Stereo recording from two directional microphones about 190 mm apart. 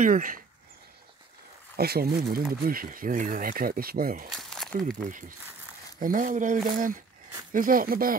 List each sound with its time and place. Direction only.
0.0 s speech: 45° right (ahead or behind)
1.8 s speech: 55° right (ahead or behind)
4.4 s crumpling: centre (ahead or behind)
4.8 s speech: 45° right (ahead or behind)